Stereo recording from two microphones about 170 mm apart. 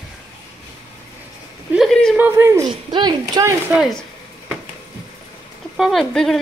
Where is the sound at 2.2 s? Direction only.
15° right (ahead or behind).